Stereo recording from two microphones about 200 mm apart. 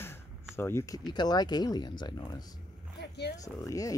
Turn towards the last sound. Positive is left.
turn(degrees=15)  # may be behind; listen again after turning